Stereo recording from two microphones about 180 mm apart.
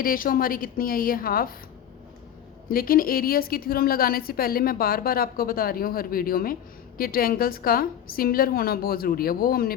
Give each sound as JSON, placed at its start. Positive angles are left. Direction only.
{"t": 0.0, "sound": "a woman's voice", "side_deg": 50}
{"t": 2.6, "sound": "a woman's voice", "side_deg": 55}